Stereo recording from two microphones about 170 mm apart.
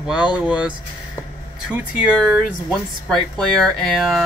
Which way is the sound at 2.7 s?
5° left (ahead or behind).